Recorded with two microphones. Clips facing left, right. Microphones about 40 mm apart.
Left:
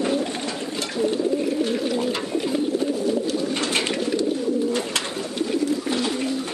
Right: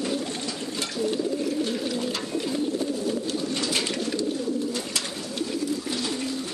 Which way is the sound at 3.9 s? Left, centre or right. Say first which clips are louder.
Left 4 dB; centre.